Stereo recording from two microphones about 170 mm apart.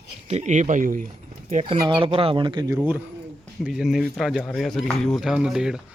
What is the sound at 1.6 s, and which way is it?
Speech, 30° right (ahead or behind).